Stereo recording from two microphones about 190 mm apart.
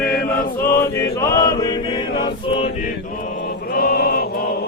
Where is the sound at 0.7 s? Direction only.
15° left (ahead or behind).